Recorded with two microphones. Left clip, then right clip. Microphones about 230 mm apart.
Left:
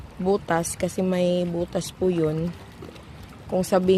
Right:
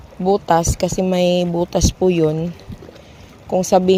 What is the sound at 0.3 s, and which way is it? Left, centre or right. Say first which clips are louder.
Speech: right 8 dB; centre.